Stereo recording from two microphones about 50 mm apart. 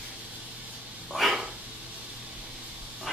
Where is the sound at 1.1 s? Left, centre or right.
Centre.